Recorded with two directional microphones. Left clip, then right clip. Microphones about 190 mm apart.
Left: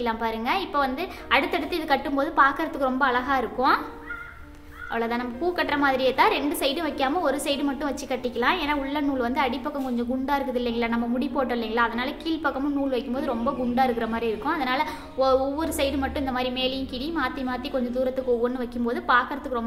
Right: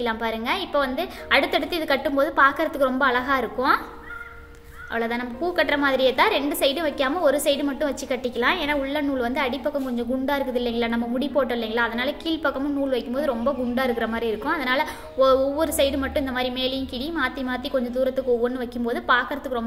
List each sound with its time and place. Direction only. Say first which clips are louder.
0.0 s a woman's voice: right 1 dB; 10° right (ahead or behind)
4.9 s a woman's voice: right 1 dB; 10° right (ahead or behind)